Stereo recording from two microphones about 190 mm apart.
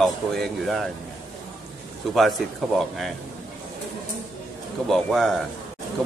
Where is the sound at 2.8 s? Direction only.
Centre (ahead or behind).